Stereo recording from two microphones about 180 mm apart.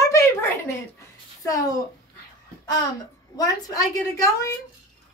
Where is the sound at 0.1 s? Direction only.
15° left (ahead or behind).